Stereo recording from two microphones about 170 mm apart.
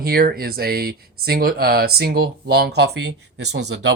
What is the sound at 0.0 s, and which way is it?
Speech, 60° right (ahead or behind).